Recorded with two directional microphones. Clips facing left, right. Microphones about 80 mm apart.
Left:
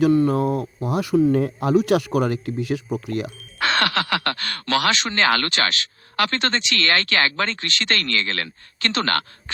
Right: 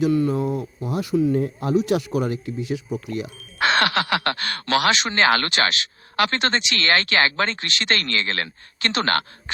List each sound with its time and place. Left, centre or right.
0.3 s speech: left
0.9 s speech: left
1.3 s speech: left
3.6 s speech: centre